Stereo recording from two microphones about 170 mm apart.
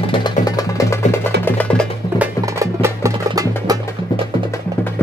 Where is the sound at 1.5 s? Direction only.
10° left (ahead or behind).